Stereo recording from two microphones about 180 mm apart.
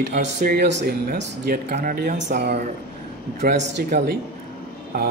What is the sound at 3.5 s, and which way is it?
Speech, 70° right (ahead or behind).